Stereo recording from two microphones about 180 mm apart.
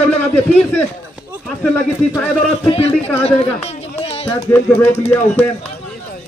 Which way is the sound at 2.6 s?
30° left (ahead or behind).